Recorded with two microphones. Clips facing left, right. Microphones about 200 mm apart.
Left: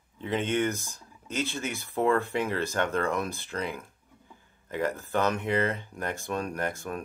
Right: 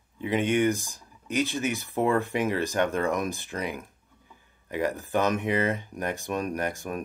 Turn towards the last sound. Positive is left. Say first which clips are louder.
# right 2 dB
turn(degrees=-15)  # may be behind; listen again after turning